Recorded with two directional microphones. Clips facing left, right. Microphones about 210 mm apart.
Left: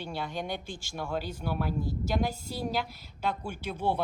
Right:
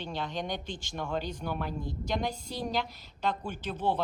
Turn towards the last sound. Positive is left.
turn(degrees=10)  # may be behind; listen again after turning